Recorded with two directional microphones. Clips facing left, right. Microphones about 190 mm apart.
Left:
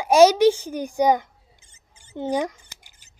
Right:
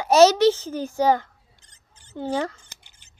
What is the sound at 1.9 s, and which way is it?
Scissors, 15° left (ahead or behind).